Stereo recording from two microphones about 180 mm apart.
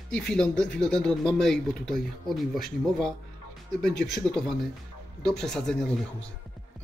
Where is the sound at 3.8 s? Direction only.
Centre (ahead or behind).